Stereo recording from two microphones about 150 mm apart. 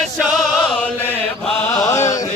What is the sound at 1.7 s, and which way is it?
Chant, 20° left (ahead or behind).